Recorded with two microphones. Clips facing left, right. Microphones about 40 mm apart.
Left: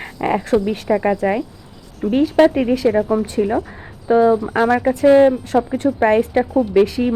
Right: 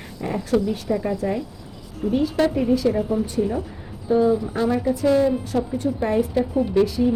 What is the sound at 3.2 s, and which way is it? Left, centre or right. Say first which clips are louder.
Speech: left 5 dB; left.